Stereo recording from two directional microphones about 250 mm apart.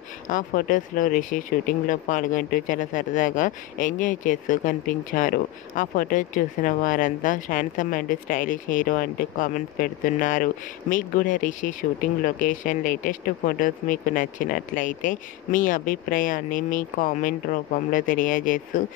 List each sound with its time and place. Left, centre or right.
0.3 s speech: left